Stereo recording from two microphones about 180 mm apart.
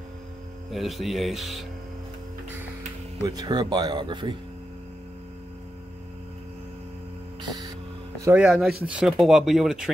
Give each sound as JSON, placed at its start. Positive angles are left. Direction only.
{"t": 0.7, "sound": "speech", "side_deg": 0}
{"t": 3.3, "sound": "speech", "side_deg": -20}
{"t": 7.4, "sound": "music", "side_deg": -20}
{"t": 8.2, "sound": "speech", "side_deg": -10}